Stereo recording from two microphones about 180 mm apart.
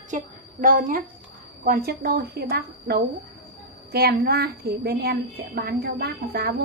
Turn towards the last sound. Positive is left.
turn(degrees=-60)  # may be behind; listen again after turning